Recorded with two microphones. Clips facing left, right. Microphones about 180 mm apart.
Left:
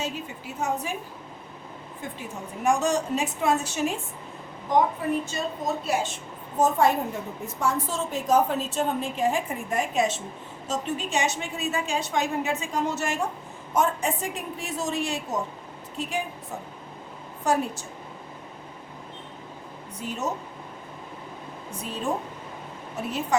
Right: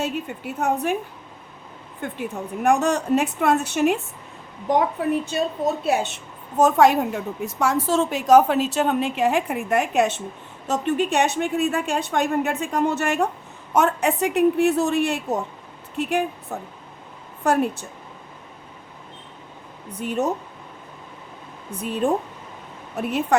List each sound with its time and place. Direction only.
0.0 s a woman's voice: 60° right (ahead or behind)
2.0 s a woman's voice: 60° right (ahead or behind)
6.6 s a woman's voice: 80° right; by 17.8 s 60° right (ahead or behind)
20.0 s a woman's voice: 60° right (ahead or behind)
22.0 s a woman's voice: 55° right (ahead or behind)